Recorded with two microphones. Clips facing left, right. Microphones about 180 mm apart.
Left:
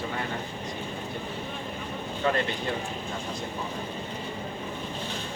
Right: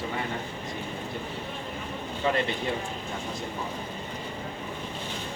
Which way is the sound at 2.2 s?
20° right (ahead or behind).